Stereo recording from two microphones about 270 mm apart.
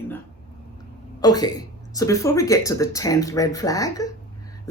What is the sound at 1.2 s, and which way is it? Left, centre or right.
Speech, centre.